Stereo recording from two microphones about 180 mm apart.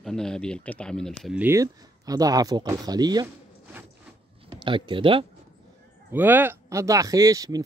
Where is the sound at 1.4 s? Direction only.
15° right (ahead or behind).